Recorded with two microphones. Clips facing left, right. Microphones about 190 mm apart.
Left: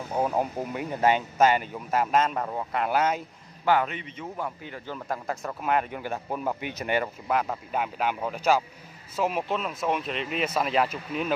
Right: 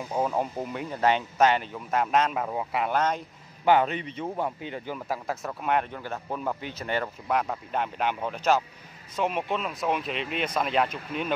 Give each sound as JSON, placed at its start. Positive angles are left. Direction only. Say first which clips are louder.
{"t": 0.2, "sound": "speech", "louder": "left 1 dB", "side_deg": 10}
{"t": 2.9, "sound": "speech", "louder": "left 2 dB", "side_deg": 5}
{"t": 3.8, "sound": "a man's voice", "louder": "right 4 dB", "side_deg": -35}
{"t": 4.9, "sound": "speech", "louder": "left 3 dB", "side_deg": -5}
{"t": 5.9, "sound": "speech", "louder": "left 2 dB", "side_deg": 15}
{"t": 7.2, "sound": "speech", "louder": "even", "side_deg": 0}